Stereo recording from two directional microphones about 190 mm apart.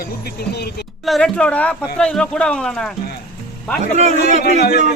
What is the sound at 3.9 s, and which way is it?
Speech, 35° right (ahead or behind).